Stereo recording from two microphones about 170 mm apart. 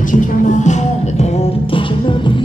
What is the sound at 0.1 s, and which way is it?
Music, 50° left (ahead or behind).